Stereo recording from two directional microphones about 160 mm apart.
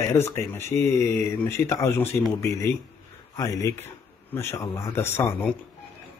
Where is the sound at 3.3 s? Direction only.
20° left (ahead or behind).